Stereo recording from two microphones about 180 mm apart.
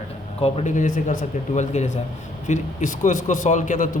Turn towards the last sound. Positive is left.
turn(degrees=45)  # may be behind; listen again after turning